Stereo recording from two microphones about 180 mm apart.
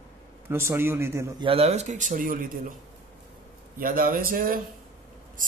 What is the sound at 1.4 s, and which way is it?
Speech, 35° right (ahead or behind).